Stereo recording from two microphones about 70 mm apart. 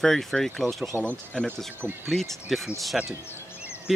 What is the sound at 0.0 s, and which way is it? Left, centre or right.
Speech, centre.